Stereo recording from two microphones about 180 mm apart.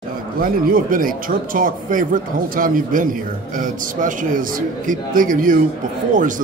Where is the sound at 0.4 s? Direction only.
50° right (ahead or behind).